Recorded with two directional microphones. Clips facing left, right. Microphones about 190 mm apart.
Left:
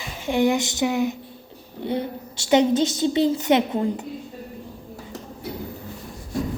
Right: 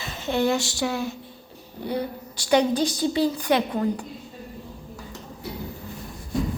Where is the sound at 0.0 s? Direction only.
10° left (ahead or behind).